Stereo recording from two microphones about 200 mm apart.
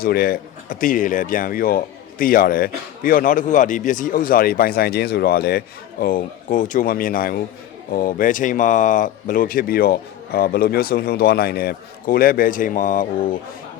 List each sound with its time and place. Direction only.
0.0 s speech: 50° left (ahead or behind)